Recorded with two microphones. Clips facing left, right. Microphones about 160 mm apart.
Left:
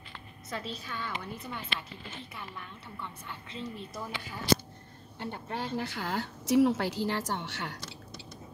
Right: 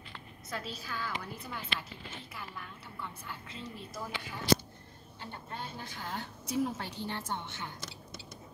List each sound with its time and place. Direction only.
0.5 s a woman's voice: 5° right (ahead or behind)
5.2 s a woman's voice: 75° left (ahead or behind)